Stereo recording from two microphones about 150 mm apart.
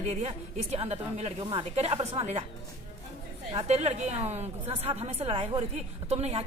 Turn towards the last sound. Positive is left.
turn(degrees=-45)  # may be behind; listen again after turning